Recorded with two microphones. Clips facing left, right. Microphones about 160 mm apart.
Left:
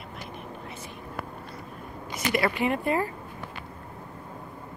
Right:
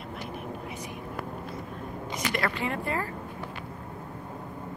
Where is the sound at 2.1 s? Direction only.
10° left (ahead or behind).